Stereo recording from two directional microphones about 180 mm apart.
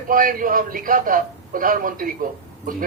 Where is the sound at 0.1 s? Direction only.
50° right (ahead or behind).